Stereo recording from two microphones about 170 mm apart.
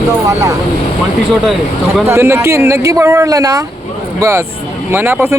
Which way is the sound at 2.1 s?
15° right (ahead or behind).